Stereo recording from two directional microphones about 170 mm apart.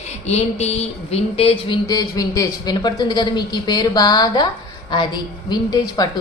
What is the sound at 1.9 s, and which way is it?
A man's voice, 20° left (ahead or behind).